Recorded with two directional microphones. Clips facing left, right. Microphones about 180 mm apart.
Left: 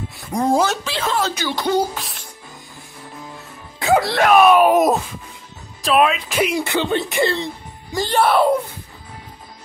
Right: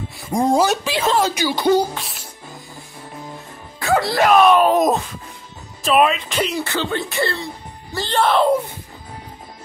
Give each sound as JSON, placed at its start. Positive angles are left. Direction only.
{"t": 0.3, "sound": "speech", "side_deg": -30}
{"t": 0.7, "sound": "speech", "side_deg": -15}
{"t": 1.5, "sound": "speech", "side_deg": 0}
{"t": 4.0, "sound": "speech", "side_deg": 0}